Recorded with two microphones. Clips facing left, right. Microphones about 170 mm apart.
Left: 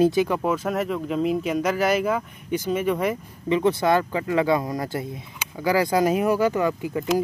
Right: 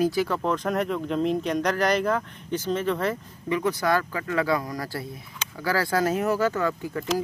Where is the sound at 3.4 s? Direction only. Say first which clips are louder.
Left 4 dB; 25° left (ahead or behind).